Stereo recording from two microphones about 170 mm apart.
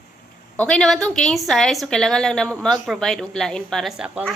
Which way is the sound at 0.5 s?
5° left (ahead or behind).